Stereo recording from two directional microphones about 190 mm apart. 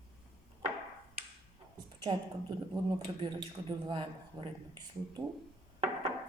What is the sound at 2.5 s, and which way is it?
Speech, 25° right (ahead or behind).